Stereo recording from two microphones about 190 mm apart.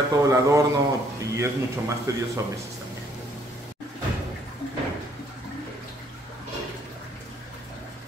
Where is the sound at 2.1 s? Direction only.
15° right (ahead or behind).